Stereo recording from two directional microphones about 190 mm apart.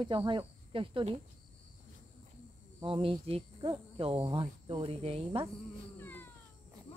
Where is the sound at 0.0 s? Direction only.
25° right (ahead or behind).